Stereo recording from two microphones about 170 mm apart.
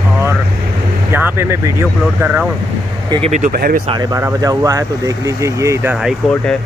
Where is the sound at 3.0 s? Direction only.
35° right (ahead or behind).